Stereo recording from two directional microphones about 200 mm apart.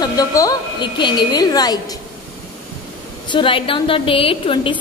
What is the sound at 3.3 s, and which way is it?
A woman's voice, 25° left (ahead or behind).